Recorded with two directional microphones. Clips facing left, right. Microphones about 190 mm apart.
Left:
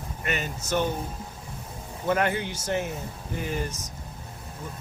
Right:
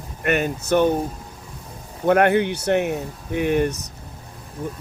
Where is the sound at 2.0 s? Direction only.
60° right (ahead or behind).